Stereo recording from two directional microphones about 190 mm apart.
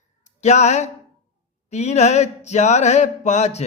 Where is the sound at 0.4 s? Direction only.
35° left (ahead or behind).